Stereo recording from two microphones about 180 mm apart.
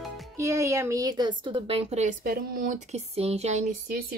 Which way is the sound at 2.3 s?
50° right (ahead or behind).